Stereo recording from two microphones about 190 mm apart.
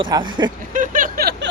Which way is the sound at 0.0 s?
25° right (ahead or behind).